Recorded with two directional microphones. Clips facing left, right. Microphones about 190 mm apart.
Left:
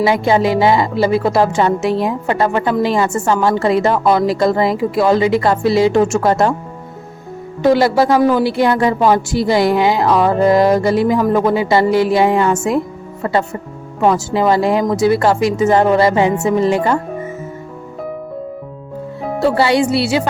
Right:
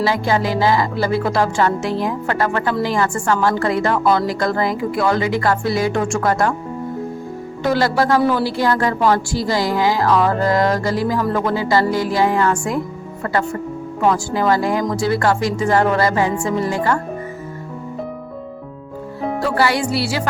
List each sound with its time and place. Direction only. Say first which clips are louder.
0.0 s speech: left 5 dB; 20° left (ahead or behind)
7.6 s speech: left 5 dB; 20° left (ahead or behind)
19.4 s speech: left 6 dB; 25° left (ahead or behind)